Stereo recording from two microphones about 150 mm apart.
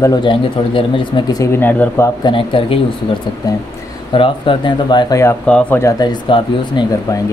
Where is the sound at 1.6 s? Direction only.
10° left (ahead or behind).